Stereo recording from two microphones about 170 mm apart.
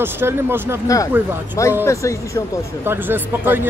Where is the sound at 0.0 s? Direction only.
15° right (ahead or behind).